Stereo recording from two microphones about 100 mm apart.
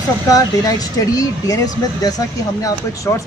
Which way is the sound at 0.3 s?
35° left (ahead or behind).